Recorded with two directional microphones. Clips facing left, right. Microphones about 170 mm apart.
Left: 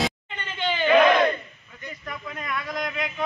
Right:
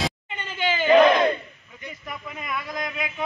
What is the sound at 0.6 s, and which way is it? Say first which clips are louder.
Battle cry: right 2 dB; 5° right (ahead or behind).